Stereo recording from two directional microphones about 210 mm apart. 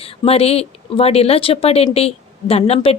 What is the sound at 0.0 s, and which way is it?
A woman's voice, 30° left (ahead or behind).